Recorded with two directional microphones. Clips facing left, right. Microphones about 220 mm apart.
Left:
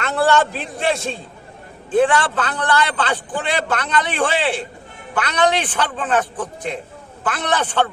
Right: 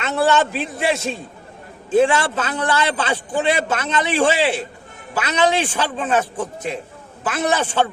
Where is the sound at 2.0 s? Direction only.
25° right (ahead or behind).